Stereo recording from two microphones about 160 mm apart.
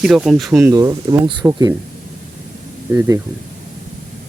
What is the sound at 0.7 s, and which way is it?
Speech, 20° right (ahead or behind).